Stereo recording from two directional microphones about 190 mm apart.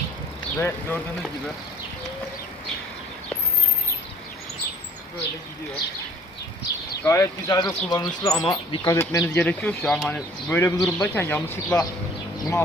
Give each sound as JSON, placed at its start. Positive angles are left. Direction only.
{"t": 0.6, "sound": "speech", "side_deg": 10}
{"t": 7.0, "sound": "speech", "side_deg": 15}